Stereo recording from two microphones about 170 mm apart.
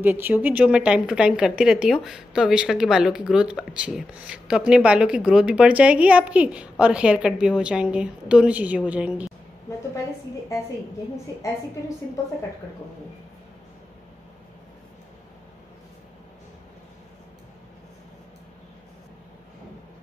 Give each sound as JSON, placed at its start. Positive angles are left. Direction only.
{"t": 0.0, "sound": "a woman's voice", "side_deg": -10}